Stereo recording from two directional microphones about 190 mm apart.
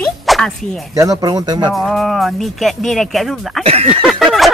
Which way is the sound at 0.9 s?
20° right (ahead or behind).